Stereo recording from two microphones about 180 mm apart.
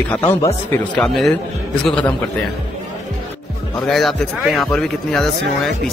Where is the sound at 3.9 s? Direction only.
Centre (ahead or behind).